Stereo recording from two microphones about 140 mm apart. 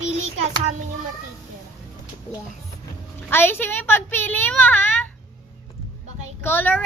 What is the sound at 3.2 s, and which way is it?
A child's voice, 15° left (ahead or behind).